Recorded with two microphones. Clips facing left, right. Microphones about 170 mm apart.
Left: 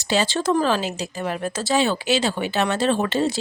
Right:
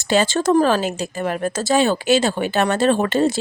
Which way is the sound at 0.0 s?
50° right (ahead or behind).